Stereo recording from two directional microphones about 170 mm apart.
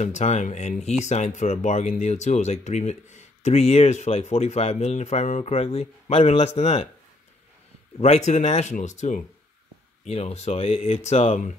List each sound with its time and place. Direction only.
0.0 s speech: 40° left (ahead or behind)
8.0 s speech: 40° left (ahead or behind)